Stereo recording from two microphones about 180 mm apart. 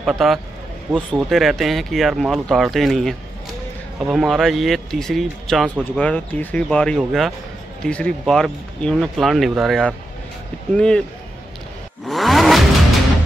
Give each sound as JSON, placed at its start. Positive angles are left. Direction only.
{"t": 0.0, "sound": "speech", "side_deg": 0}
{"t": 12.1, "sound": "vehicle", "side_deg": 0}